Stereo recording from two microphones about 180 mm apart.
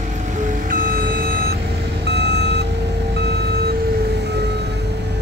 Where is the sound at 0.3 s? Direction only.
45° right (ahead or behind).